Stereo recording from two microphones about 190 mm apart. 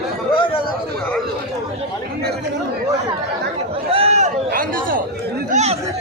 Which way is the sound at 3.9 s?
35° right (ahead or behind).